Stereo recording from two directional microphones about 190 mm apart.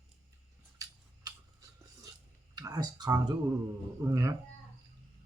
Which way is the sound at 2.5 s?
20° right (ahead or behind).